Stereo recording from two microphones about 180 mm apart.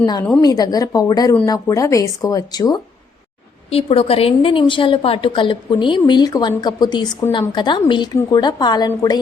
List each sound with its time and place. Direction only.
0.0 s a woman's voice: 20° left (ahead or behind)
3.7 s a woman's voice: 35° left (ahead or behind)